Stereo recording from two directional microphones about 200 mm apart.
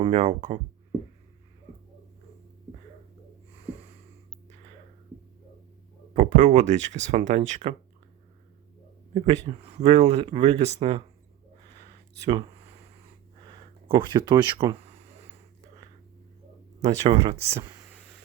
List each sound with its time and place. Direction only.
0.0 s speech: 35° right (ahead or behind)
6.1 s speech: 35° right (ahead or behind)
9.1 s speech: 30° right (ahead or behind)
12.2 s speech: 25° right (ahead or behind)
13.4 s a sound: 25° right (ahead or behind)
16.8 s speech: 30° right (ahead or behind)